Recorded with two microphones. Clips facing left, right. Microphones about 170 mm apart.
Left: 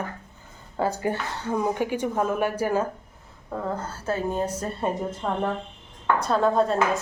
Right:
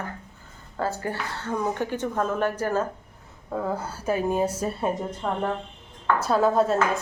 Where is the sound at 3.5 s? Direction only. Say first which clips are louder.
Right 1 dB; 5° right (ahead or behind).